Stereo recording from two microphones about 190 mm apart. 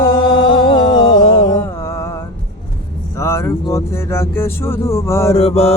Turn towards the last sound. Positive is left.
turn(degrees=30)  # may be behind; listen again after turning